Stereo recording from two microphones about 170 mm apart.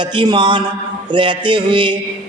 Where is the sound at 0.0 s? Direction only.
25° right (ahead or behind).